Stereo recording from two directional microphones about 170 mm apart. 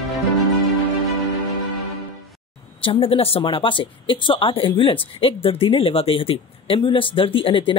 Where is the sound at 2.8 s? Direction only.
30° left (ahead or behind).